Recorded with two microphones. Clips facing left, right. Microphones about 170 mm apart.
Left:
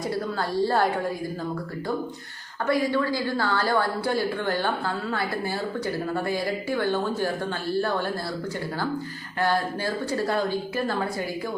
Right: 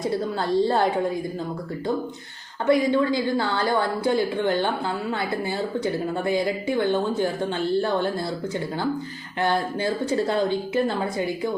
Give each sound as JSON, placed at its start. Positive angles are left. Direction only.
{"t": 0.6, "sound": "a woman's voice", "side_deg": -20}
{"t": 2.6, "sound": "a woman's voice", "side_deg": -20}
{"t": 5.8, "sound": "a woman's voice", "side_deg": -20}
{"t": 9.4, "sound": "a woman's voice", "side_deg": -20}